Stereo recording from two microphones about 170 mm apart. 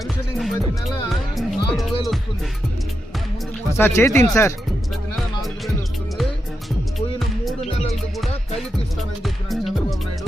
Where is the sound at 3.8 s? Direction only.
15° left (ahead or behind).